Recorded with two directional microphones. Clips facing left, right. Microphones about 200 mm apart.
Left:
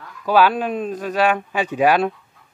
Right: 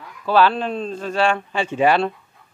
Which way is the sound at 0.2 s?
10° left (ahead or behind).